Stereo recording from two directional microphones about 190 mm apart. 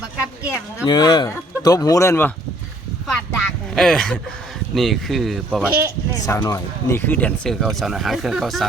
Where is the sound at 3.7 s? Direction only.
Centre (ahead or behind).